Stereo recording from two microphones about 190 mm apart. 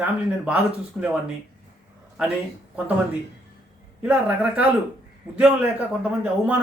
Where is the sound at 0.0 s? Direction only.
5° right (ahead or behind).